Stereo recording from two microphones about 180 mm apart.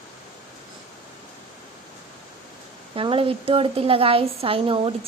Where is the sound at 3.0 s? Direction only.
30° right (ahead or behind).